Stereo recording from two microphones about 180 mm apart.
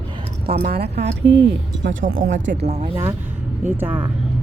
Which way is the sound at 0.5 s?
60° right (ahead or behind).